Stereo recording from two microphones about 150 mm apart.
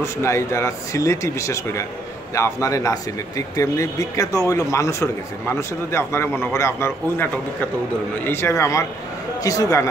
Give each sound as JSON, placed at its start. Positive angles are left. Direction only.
{"t": 0.0, "sound": "speech", "side_deg": 20}